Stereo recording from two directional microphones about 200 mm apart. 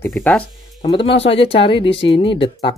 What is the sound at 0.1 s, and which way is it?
Speech, 5° left (ahead or behind).